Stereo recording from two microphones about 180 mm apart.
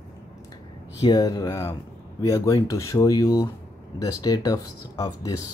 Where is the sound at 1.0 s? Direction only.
20° left (ahead or behind).